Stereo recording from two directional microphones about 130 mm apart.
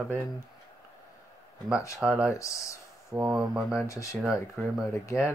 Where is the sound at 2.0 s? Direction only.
10° right (ahead or behind).